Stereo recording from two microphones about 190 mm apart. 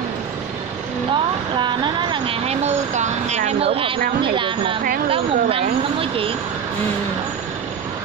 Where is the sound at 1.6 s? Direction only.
25° right (ahead or behind).